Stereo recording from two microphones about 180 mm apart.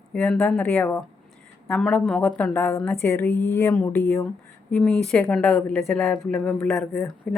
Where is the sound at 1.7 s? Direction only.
Centre (ahead or behind).